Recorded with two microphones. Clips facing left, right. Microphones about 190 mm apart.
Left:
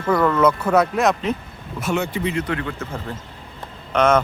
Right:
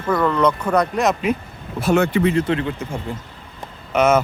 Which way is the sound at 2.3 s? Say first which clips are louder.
Right 5 dB; 25° right (ahead or behind).